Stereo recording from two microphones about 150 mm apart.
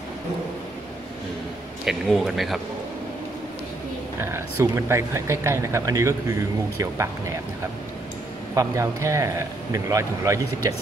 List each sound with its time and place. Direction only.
1.9 s a man's voice: centre (ahead or behind)
4.2 s speech: 15° right (ahead or behind)
8.5 s a man's voice: 20° right (ahead or behind)